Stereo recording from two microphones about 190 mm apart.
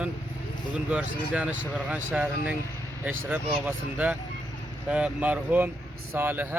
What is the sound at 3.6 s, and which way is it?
A man's voice, 10° right (ahead or behind).